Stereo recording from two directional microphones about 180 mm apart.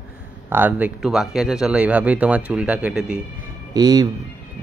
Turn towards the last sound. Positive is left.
turn(degrees=-20)  # may be behind; listen again after turning